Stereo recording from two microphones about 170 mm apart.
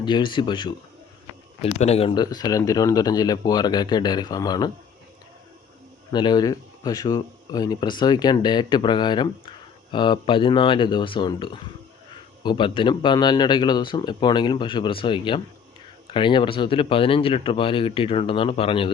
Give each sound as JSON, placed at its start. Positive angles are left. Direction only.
{"t": 0.0, "sound": "speech", "side_deg": 25}
{"t": 6.1, "sound": "speech", "side_deg": 25}